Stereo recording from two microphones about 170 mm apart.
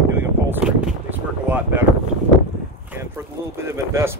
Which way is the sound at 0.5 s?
10° right (ahead or behind).